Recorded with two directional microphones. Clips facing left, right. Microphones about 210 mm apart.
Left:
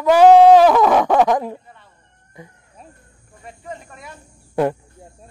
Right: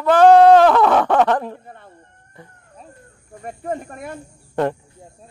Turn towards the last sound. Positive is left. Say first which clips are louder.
# left 2 dB
turn(degrees=10)  # may be behind; listen again after turning